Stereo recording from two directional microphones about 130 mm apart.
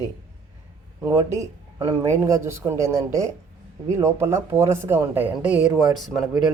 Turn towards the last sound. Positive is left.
turn(degrees=0)  # may be behind; listen again after turning